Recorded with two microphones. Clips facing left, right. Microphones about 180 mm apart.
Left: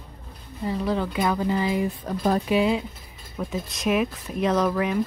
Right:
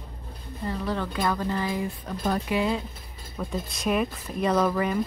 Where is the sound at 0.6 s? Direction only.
10° left (ahead or behind).